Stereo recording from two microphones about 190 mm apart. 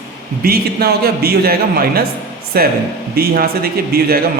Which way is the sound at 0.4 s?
50° right (ahead or behind).